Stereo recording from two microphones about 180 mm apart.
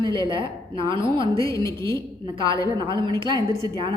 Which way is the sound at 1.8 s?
25° right (ahead or behind).